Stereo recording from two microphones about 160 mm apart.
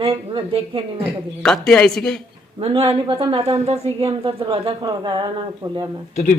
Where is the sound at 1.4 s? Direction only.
5° left (ahead or behind).